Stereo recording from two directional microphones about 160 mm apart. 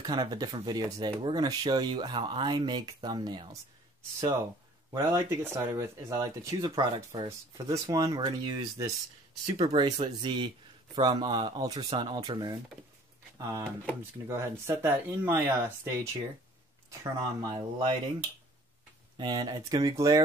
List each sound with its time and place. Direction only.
0.0 s speech: 25° right (ahead or behind)
5.1 s speech: 15° right (ahead or behind)
9.7 s speech: 35° right (ahead or behind)
19.1 s speech: 30° right (ahead or behind)